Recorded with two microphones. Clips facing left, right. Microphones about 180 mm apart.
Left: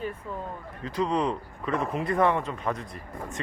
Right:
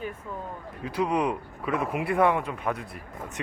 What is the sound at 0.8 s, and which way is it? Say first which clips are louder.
Speech: right 1 dB; 10° right (ahead or behind).